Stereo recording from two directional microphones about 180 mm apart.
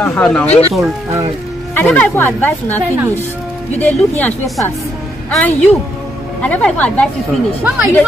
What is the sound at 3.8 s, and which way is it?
A woman's voice, 10° left (ahead or behind).